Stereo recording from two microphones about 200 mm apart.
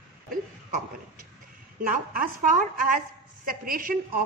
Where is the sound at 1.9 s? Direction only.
45° right (ahead or behind).